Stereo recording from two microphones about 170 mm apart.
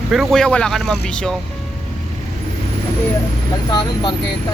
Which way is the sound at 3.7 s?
25° left (ahead or behind).